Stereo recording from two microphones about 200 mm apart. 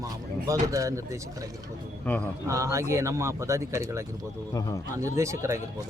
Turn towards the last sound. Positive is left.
turn(degrees=-15)  # may be behind; listen again after turning